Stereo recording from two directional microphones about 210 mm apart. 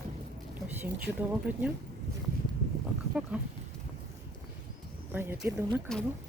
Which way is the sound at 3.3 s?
5° right (ahead or behind).